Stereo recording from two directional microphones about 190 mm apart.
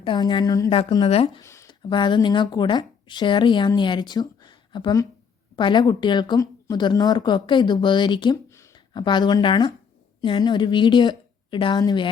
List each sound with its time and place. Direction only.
0.0 s speech: 25° left (ahead or behind)
1.4 s a woman's voice: 15° left (ahead or behind)